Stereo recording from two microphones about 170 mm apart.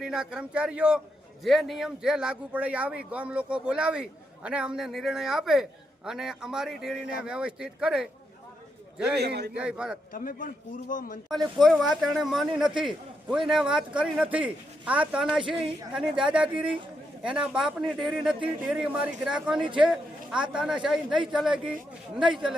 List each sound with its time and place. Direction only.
0.0 s speech: 5° right (ahead or behind)
9.1 s a man's voice: 70° right (ahead or behind)
9.6 s speech: 5° right (ahead or behind)
10.1 s a man's voice: 55° left (ahead or behind)
11.3 s a man's voice: centre (ahead or behind)